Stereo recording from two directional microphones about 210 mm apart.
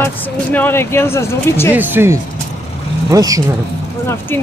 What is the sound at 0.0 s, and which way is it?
Speech, 10° left (ahead or behind).